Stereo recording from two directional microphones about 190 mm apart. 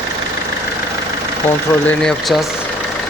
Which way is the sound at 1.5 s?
5° left (ahead or behind).